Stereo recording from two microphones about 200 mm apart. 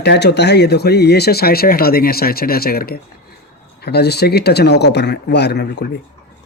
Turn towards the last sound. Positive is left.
turn(degrees=55)  # may be behind; listen again after turning